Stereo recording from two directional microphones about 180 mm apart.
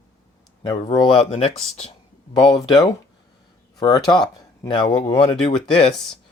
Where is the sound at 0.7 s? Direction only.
25° left (ahead or behind).